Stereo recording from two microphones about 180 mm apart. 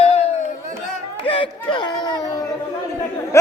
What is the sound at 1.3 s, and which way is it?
Speech, 30° left (ahead or behind).